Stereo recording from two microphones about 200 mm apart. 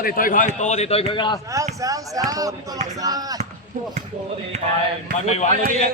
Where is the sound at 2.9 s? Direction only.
20° right (ahead or behind).